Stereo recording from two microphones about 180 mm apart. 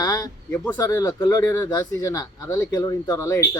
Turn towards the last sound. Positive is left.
turn(degrees=15)  # may be behind; listen again after turning